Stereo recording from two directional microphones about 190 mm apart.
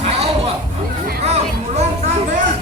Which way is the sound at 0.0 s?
35° right (ahead or behind).